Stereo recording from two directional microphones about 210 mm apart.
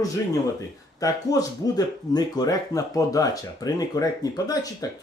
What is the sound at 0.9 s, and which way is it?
Speech, 15° left (ahead or behind).